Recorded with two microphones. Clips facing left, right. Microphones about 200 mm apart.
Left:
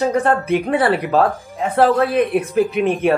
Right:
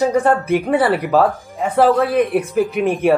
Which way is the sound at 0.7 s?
Centre (ahead or behind).